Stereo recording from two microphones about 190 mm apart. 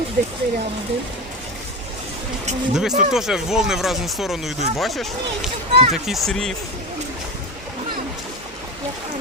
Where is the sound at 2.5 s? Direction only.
35° right (ahead or behind).